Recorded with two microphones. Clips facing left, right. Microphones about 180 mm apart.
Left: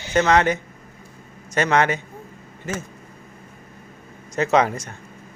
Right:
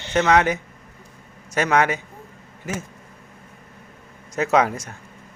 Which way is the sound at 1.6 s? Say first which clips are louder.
Even; 5° right (ahead or behind).